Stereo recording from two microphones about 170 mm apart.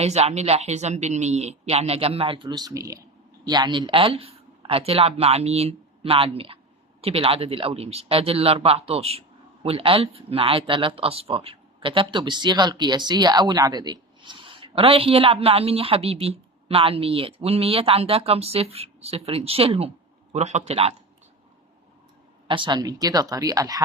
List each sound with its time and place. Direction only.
0.0 s speech: 40° right (ahead or behind)
22.4 s a woman's voice: 30° right (ahead or behind)